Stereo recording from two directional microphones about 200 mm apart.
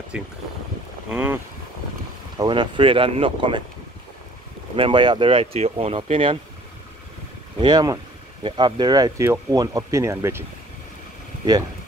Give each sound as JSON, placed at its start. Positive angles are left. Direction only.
{"t": 0.1, "sound": "speech", "side_deg": -5}
{"t": 2.3, "sound": "speech", "side_deg": -20}
{"t": 4.7, "sound": "speech", "side_deg": -25}
{"t": 7.5, "sound": "speech", "side_deg": -20}